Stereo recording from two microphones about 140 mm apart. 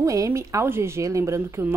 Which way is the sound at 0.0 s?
25° right (ahead or behind).